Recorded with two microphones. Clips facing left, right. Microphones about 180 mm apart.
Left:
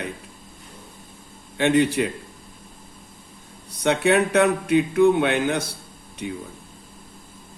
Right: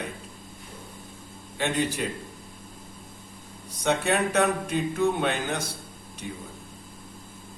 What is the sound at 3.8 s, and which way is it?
A man's voice, 65° left (ahead or behind).